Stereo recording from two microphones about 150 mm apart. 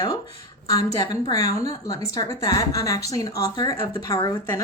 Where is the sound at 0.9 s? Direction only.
25° left (ahead or behind).